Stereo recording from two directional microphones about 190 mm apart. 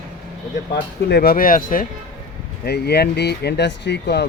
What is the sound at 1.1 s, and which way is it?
Speech, 55° left (ahead or behind).